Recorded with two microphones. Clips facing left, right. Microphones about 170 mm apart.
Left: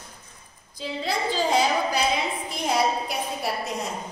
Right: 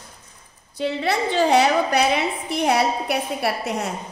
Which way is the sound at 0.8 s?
70° right (ahead or behind).